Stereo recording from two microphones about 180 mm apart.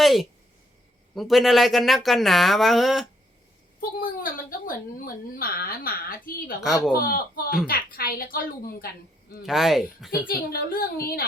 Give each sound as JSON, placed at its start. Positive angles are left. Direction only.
{"t": 0.0, "sound": "a sound", "side_deg": 0}
{"t": 1.1, "sound": "speech", "side_deg": 0}
{"t": 3.8, "sound": "a woman's voice", "side_deg": 55}
{"t": 6.6, "sound": "speech", "side_deg": -5}
{"t": 6.9, "sound": "a woman's voice", "side_deg": 55}
{"t": 9.5, "sound": "speech", "side_deg": 0}
{"t": 10.2, "sound": "a woman's voice", "side_deg": 55}